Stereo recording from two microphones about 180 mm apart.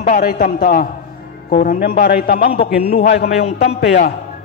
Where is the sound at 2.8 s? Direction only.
35° left (ahead or behind).